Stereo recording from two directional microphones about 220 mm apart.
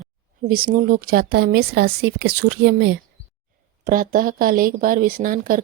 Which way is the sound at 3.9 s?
40° right (ahead or behind).